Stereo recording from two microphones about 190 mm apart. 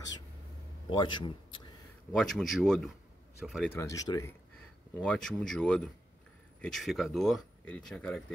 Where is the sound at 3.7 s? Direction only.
15° left (ahead or behind).